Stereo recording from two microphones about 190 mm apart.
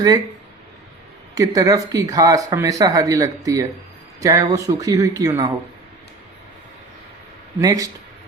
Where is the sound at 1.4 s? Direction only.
20° right (ahead or behind).